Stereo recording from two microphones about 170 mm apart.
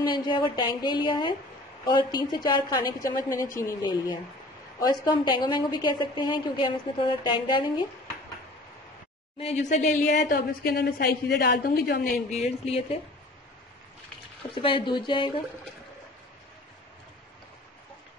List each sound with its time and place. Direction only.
0.0 s a woman's voice: 25° left (ahead or behind)
9.4 s a woman's voice: 40° left (ahead or behind)
10.3 s speech: 75° left (ahead or behind)
12.3 s speech: 40° left (ahead or behind)
14.5 s a woman's voice: 30° left (ahead or behind)